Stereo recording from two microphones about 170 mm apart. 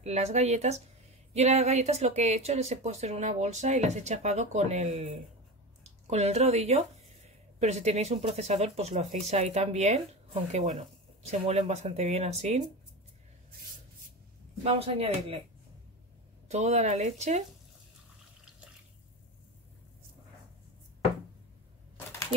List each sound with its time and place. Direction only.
0.0 s speech: 40° right (ahead or behind)
14.6 s speech: 35° right (ahead or behind)
16.4 s speech: 40° right (ahead or behind)